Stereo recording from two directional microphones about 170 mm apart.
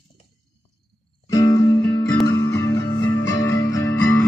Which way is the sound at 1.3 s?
20° left (ahead or behind).